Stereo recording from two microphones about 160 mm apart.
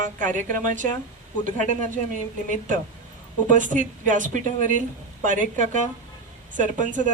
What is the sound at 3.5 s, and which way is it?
Speech, 55° right (ahead or behind).